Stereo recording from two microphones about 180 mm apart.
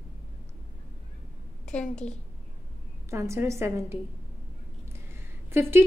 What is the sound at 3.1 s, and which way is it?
Speech, 15° right (ahead or behind).